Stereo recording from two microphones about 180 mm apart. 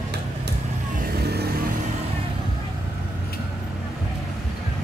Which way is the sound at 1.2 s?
60° right (ahead or behind).